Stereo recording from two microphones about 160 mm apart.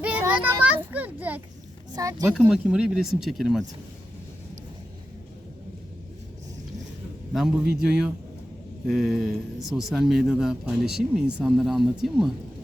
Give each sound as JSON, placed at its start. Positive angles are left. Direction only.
{"t": 0.0, "sound": "a child's voice", "side_deg": -10}
{"t": 2.0, "sound": "speech", "side_deg": -20}
{"t": 2.4, "sound": "speech", "side_deg": -5}
{"t": 7.3, "sound": "speech", "side_deg": -5}